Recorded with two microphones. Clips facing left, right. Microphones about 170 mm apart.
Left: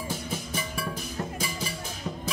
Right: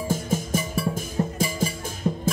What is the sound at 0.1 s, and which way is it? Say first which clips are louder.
Music: right 11 dB; 45° right (ahead or behind).